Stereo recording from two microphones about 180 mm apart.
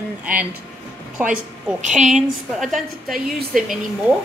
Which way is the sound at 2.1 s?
Centre (ahead or behind).